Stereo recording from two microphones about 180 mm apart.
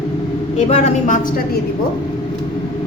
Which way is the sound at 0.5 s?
40° left (ahead or behind).